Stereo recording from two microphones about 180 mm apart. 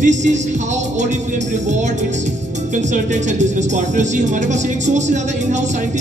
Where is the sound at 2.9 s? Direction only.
40° right (ahead or behind).